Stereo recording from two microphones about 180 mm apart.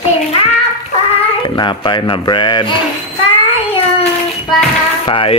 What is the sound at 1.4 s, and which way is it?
Speech, 25° left (ahead or behind).